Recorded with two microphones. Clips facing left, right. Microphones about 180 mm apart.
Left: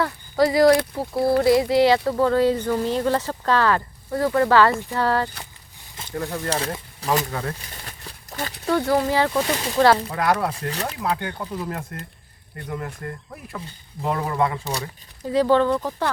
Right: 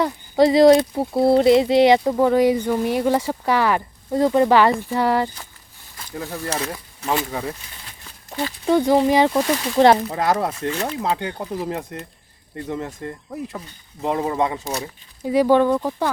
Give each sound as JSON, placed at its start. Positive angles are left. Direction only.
{"t": 0.0, "sound": "speech", "side_deg": -20}
{"t": 6.5, "sound": "speech", "side_deg": 30}
{"t": 8.6, "sound": "speech", "side_deg": -20}